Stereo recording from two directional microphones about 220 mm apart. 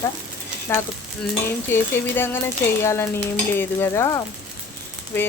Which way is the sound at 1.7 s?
10° left (ahead or behind).